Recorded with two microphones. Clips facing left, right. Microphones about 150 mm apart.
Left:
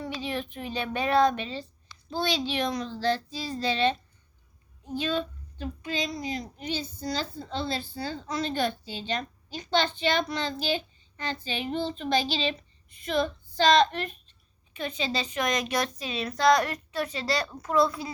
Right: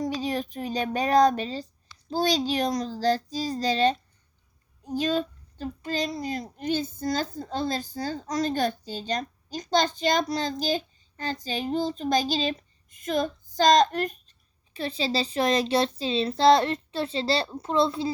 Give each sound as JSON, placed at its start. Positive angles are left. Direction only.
{"t": 0.0, "sound": "a child's voice", "side_deg": -40}